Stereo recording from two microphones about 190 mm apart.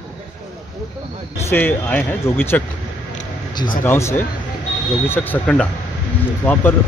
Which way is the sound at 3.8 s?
15° left (ahead or behind).